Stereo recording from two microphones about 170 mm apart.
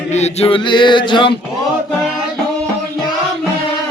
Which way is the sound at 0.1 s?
40° left (ahead or behind).